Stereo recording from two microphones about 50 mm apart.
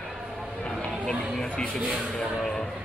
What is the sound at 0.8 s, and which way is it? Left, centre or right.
Speech, left.